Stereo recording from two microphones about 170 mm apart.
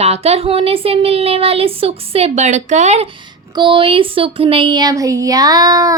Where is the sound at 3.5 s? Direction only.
30° right (ahead or behind).